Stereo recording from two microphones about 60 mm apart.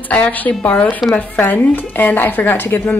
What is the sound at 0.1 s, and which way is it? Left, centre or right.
A woman's voice, left.